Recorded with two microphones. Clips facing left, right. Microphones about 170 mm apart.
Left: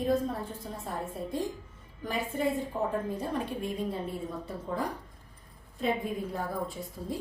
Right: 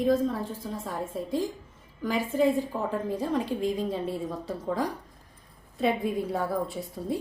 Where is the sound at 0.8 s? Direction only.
90° right.